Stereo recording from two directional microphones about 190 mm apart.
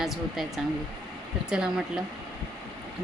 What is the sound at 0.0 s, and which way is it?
Speech, centre (ahead or behind).